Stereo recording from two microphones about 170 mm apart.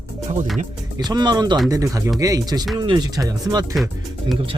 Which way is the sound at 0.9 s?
25° right (ahead or behind).